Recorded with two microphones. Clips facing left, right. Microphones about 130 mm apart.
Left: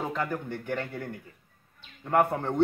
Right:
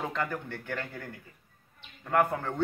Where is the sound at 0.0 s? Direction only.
10° left (ahead or behind).